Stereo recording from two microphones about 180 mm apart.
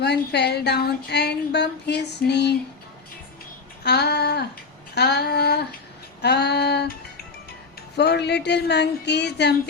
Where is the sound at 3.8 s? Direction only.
65° left (ahead or behind).